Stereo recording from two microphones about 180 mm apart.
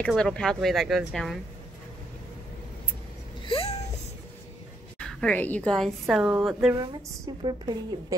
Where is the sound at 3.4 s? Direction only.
30° left (ahead or behind).